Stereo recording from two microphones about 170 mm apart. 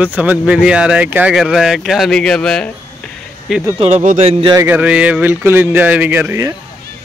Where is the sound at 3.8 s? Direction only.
45° right (ahead or behind).